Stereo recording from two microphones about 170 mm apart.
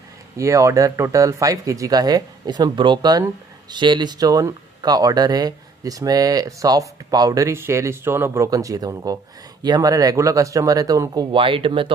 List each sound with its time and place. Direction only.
0.4 s speech: 20° right (ahead or behind)